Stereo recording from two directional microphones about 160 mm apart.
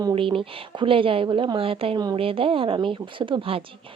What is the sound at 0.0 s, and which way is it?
Speech, 30° right (ahead or behind).